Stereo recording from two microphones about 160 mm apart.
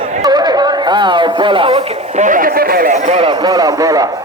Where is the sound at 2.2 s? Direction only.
60° right (ahead or behind).